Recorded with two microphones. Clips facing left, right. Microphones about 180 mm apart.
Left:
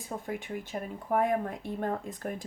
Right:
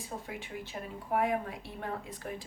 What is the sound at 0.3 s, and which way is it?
Speech, 50° left (ahead or behind).